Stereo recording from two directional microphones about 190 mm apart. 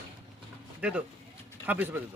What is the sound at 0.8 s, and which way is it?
Speech, 5° right (ahead or behind).